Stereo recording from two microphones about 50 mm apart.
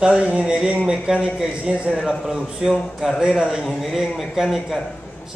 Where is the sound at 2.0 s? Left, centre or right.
Centre.